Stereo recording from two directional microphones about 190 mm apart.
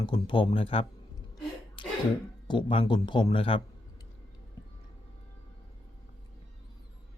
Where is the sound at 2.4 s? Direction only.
25° left (ahead or behind).